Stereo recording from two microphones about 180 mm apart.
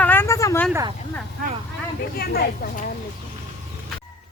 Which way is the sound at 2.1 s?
60° left (ahead or behind).